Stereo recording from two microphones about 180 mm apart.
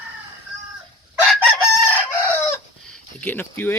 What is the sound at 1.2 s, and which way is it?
Chicken, 5° left (ahead or behind).